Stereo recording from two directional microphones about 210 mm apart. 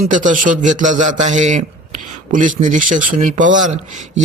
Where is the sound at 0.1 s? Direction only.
40° right (ahead or behind).